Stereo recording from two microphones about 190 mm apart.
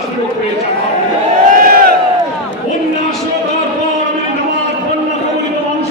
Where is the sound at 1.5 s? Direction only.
50° right (ahead or behind).